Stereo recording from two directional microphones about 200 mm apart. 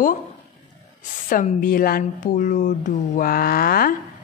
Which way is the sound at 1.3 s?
45° left (ahead or behind).